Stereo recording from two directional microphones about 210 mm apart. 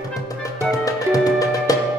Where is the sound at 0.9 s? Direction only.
15° left (ahead or behind).